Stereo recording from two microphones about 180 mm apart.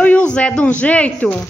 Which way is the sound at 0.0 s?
5° left (ahead or behind).